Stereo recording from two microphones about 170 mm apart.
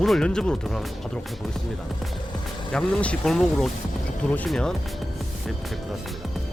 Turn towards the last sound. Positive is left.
turn(degrees=0)  # may be behind; listen again after turning